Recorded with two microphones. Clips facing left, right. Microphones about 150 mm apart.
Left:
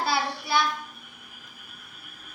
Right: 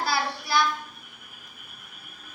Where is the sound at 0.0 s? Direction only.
25° left (ahead or behind).